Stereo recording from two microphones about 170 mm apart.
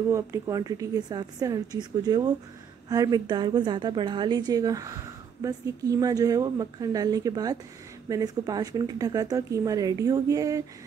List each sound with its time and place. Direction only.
0.1 s a woman's voice: 20° right (ahead or behind)